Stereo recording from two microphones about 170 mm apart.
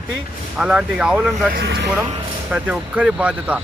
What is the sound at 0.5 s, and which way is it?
Speech, 5° right (ahead or behind).